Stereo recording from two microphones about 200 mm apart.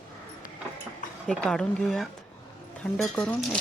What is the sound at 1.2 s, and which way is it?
Speech, 5° left (ahead or behind).